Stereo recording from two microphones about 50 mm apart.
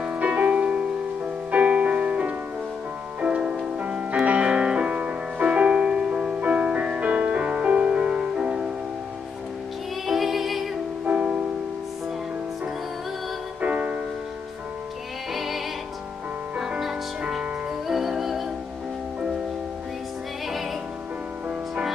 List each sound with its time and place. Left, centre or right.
0.0 s music: right
10.0 s music: centre
11.1 s music: right
13.6 s music: right
15.3 s music: centre
17.2 s music: centre
17.8 s music: centre